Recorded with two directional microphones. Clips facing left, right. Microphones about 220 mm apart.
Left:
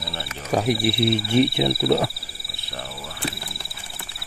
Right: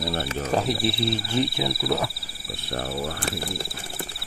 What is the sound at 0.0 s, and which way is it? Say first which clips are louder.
Cricket: right 6 dB; 50° right (ahead or behind).